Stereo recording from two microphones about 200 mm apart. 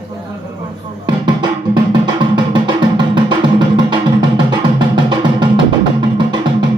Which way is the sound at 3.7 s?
20° right (ahead or behind).